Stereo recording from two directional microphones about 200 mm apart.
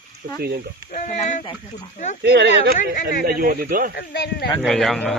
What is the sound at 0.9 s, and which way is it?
Speech, 35° left (ahead or behind).